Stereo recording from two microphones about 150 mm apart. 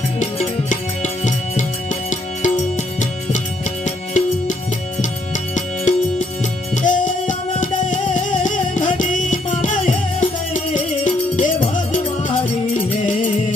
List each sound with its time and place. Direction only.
0.2 s music: 50° left (ahead or behind)
3.8 s music: 55° left (ahead or behind)